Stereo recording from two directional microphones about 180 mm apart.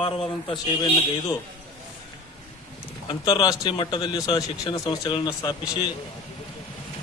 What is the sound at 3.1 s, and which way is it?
Speech, 25° left (ahead or behind).